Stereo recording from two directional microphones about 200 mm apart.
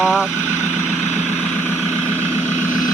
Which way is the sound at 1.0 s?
35° left (ahead or behind).